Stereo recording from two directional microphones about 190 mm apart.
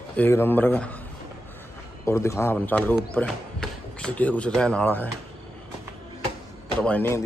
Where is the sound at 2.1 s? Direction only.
15° left (ahead or behind).